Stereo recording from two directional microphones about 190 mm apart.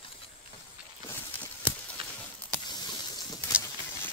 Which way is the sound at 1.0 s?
10° left (ahead or behind).